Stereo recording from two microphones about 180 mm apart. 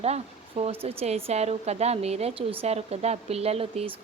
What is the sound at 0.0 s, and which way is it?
Speech, 35° right (ahead or behind).